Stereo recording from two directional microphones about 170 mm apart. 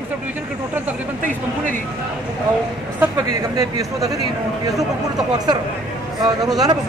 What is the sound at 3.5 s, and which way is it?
Speech, 20° right (ahead or behind).